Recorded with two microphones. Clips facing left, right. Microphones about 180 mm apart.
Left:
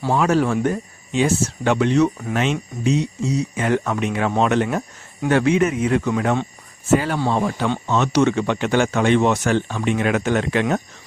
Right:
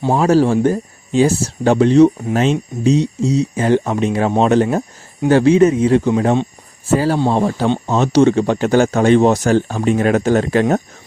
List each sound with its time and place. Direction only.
0.1 s speech: 35° right (ahead or behind)